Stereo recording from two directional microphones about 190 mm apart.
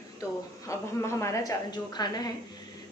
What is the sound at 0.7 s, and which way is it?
A woman's voice, 15° left (ahead or behind).